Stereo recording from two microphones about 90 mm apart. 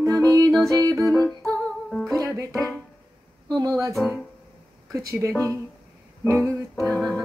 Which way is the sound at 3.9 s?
5° right (ahead or behind).